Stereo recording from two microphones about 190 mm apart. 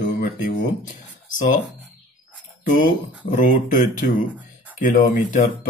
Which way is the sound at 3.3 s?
45° left (ahead or behind).